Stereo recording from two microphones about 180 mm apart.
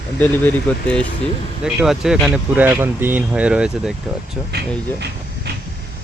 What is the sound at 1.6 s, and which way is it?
Speech, 5° right (ahead or behind).